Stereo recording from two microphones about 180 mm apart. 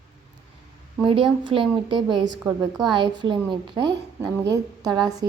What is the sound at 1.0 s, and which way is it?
A woman's voice, 30° right (ahead or behind).